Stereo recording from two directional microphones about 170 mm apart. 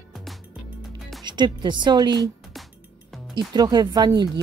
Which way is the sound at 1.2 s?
25° right (ahead or behind).